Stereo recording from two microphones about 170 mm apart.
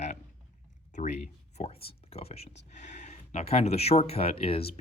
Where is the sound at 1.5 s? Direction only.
35° left (ahead or behind).